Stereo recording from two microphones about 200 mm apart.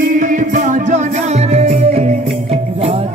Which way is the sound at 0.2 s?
40° right (ahead or behind).